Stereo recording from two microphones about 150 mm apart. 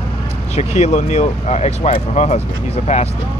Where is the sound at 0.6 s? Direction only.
50° left (ahead or behind).